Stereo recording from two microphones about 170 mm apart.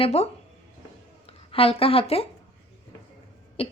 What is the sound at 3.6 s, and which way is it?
Cough, 35° left (ahead or behind).